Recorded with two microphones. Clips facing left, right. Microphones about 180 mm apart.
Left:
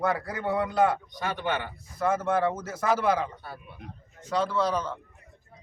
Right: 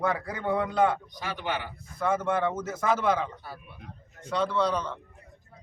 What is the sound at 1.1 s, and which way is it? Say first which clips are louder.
Speech: left 3 dB; 50° left (ahead or behind).